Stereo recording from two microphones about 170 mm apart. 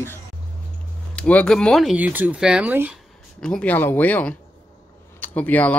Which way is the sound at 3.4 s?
5° left (ahead or behind).